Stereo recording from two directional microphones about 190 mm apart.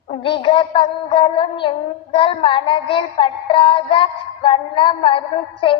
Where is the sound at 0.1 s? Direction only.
25° left (ahead or behind).